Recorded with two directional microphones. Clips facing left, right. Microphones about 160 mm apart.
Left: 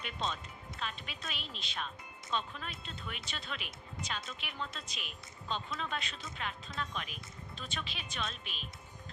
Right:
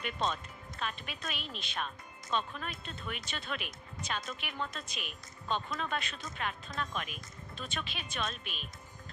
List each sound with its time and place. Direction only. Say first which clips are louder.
0.0 s speech: right 4 dB; 50° right (ahead or behind)